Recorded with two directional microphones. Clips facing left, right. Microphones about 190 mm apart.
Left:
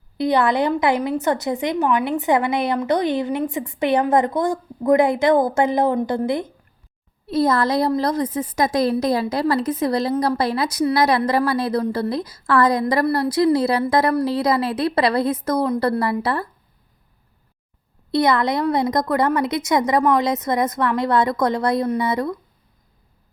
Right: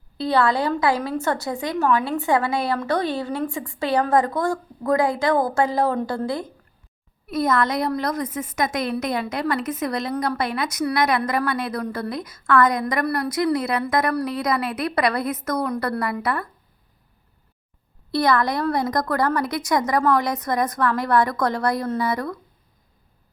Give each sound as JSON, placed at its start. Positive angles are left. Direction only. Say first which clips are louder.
{"t": 0.2, "sound": "a woman's voice", "louder": "left 2 dB", "side_deg": 20}
{"t": 18.1, "sound": "a woman's voice", "louder": "left 2 dB", "side_deg": 20}